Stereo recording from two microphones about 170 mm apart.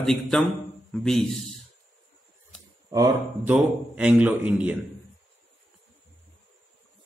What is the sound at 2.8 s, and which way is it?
Speech, 25° right (ahead or behind).